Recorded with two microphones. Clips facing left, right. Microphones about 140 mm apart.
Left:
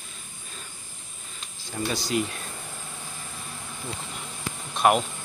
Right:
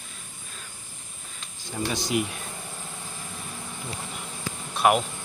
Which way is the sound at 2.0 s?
20° right (ahead or behind).